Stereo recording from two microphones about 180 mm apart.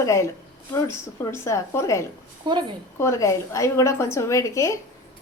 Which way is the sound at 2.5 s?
25° right (ahead or behind).